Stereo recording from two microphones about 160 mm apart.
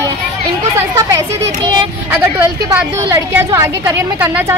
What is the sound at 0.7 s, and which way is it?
A woman's voice, 20° right (ahead or behind).